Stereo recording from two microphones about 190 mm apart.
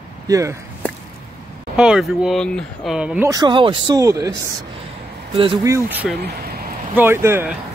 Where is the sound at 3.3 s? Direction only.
25° right (ahead or behind).